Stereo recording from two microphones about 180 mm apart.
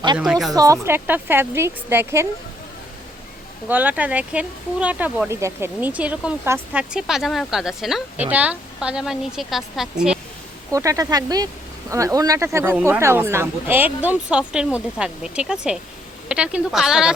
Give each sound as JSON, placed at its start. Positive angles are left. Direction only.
{"t": 0.5, "sound": "speech", "side_deg": -20}
{"t": 3.7, "sound": "a woman's voice", "side_deg": -10}
{"t": 10.7, "sound": "a woman's voice", "side_deg": -20}